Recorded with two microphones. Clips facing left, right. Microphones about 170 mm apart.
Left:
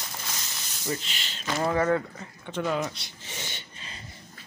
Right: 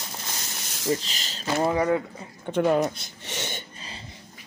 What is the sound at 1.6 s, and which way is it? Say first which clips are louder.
Speech: right 1 dB; 15° right (ahead or behind).